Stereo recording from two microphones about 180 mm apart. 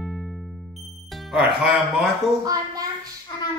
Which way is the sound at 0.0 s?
Centre (ahead or behind).